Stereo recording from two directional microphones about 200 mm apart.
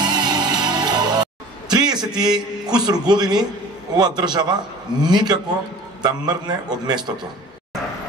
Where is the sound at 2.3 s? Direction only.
20° right (ahead or behind).